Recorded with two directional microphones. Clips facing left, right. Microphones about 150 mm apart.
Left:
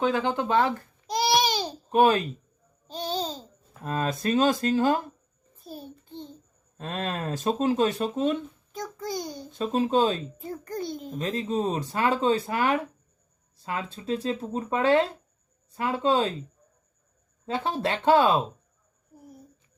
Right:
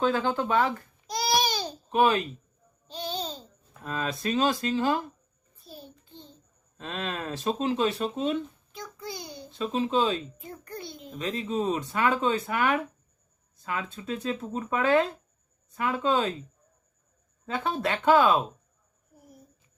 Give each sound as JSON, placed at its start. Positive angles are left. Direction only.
{"t": 0.0, "sound": "speech", "side_deg": 15}
{"t": 0.4, "sound": "speech", "side_deg": 30}
{"t": 2.8, "sound": "babbling", "side_deg": 45}
{"t": 3.8, "sound": "a child's voice", "side_deg": 45}
{"t": 17.4, "sound": "speech", "side_deg": 35}